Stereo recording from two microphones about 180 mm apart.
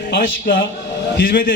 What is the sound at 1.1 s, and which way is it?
Speech, 55° left (ahead or behind).